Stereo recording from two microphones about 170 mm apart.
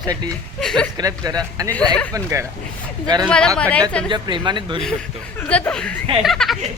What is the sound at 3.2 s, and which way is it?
Speech, 5° left (ahead or behind).